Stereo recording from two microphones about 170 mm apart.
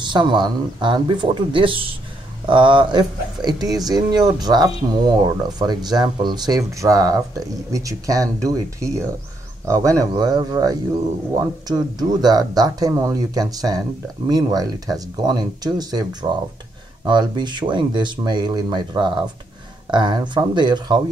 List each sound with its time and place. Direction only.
0.0 s speech: 25° right (ahead or behind)